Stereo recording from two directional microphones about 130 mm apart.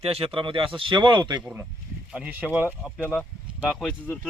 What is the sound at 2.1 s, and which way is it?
Speech, 10° right (ahead or behind).